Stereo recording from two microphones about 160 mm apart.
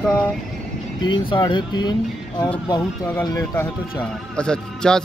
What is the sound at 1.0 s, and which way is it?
Speech, 30° left (ahead or behind).